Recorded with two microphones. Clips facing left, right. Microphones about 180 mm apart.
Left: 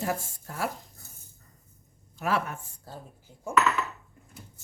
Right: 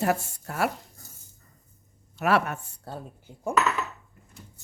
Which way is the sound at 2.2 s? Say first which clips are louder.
Right 5 dB; 70° right (ahead or behind).